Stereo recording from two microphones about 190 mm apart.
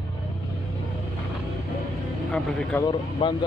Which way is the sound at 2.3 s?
Centre (ahead or behind).